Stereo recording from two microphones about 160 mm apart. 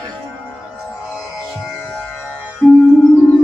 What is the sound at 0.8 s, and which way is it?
Music, 5° right (ahead or behind).